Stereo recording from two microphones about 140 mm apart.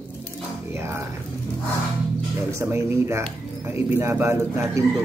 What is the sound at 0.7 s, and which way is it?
Speech, 20° right (ahead or behind).